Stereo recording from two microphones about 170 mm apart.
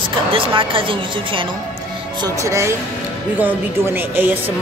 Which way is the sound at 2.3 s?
15° right (ahead or behind).